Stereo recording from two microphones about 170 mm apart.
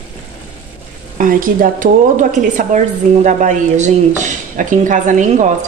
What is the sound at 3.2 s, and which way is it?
Speech, 45° right (ahead or behind).